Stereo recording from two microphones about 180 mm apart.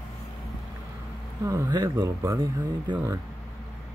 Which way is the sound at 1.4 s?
20° right (ahead or behind).